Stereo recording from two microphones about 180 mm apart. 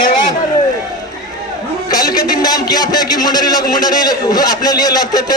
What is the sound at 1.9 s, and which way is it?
A man's voice, 20° left (ahead or behind).